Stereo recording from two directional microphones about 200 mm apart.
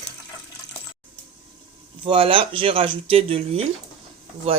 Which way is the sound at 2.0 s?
25° right (ahead or behind).